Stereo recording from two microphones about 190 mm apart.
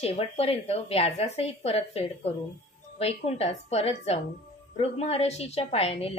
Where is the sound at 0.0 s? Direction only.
30° left (ahead or behind).